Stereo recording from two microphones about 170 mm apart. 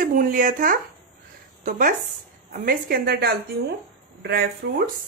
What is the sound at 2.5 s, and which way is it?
A woman's voice, 60° right (ahead or behind).